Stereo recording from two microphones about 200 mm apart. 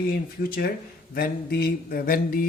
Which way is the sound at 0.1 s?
50° left (ahead or behind).